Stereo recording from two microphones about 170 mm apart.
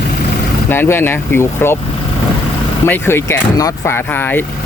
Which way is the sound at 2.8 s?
10° left (ahead or behind).